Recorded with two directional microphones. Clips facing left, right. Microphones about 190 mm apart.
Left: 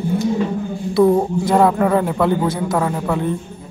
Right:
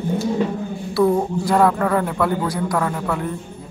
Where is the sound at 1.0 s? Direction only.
20° left (ahead or behind).